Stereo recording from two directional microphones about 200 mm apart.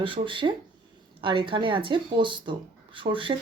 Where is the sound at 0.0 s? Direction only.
25° right (ahead or behind).